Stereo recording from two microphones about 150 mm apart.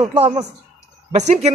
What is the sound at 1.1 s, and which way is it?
Speech, 50° right (ahead or behind).